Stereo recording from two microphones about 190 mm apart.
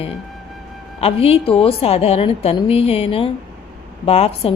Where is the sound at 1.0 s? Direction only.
30° left (ahead or behind).